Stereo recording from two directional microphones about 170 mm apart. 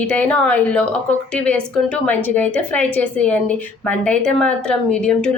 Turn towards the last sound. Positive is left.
turn(degrees=5)  # may be behind; listen again after turning